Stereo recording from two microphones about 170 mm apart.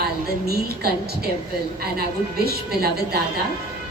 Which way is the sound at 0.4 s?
70° right (ahead or behind).